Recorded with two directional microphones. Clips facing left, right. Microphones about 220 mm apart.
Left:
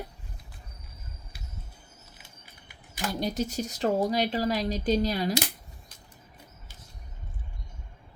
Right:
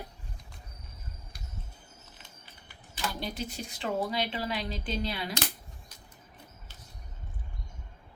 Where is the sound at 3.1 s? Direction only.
40° left (ahead or behind).